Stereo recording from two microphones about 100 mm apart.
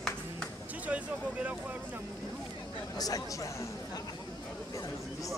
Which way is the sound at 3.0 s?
35° left (ahead or behind).